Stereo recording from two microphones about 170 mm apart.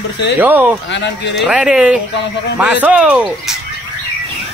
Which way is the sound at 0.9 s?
90° left.